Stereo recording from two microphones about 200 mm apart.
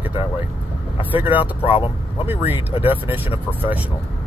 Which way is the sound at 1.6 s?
25° left (ahead or behind).